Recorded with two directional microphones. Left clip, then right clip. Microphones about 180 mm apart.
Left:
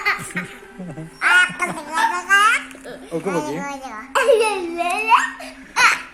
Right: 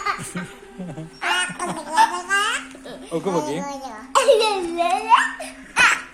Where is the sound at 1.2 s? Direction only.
Centre (ahead or behind).